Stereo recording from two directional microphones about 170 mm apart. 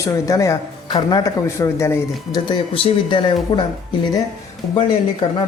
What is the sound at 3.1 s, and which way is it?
Speech, 30° left (ahead or behind).